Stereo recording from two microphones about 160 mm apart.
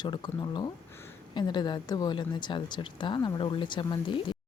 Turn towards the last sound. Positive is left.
turn(degrees=30)  # may be behind; listen again after turning